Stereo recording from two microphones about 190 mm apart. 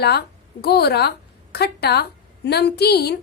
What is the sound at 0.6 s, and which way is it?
A woman's voice, 60° left (ahead or behind).